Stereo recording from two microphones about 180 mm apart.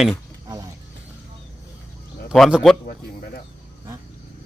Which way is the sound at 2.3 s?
Centre (ahead or behind).